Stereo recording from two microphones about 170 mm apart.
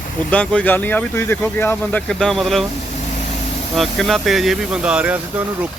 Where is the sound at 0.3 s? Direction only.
10° left (ahead or behind).